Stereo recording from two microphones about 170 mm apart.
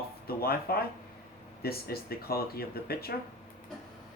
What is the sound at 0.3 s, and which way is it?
Speech, 65° left (ahead or behind).